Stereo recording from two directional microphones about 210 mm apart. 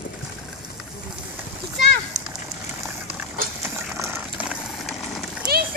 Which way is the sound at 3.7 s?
10° right (ahead or behind).